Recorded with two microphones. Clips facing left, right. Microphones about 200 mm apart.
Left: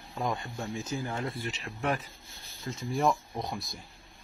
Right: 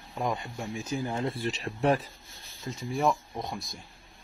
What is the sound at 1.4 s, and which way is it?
Speech, 40° right (ahead or behind).